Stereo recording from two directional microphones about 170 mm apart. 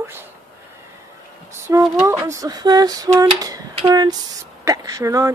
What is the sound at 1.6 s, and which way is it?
Speech, 15° right (ahead or behind).